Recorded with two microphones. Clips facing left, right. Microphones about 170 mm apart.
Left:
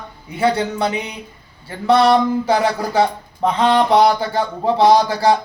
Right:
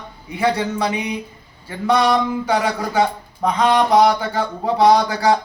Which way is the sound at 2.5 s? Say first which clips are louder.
Left 2 dB; 30° left (ahead or behind).